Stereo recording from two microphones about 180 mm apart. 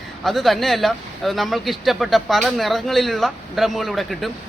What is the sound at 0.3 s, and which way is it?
Speech, centre (ahead or behind).